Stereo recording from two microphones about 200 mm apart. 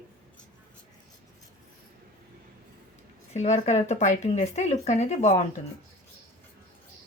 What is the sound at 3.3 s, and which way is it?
Speech, 35° left (ahead or behind).